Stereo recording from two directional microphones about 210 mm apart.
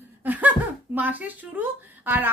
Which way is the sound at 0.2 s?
10° right (ahead or behind).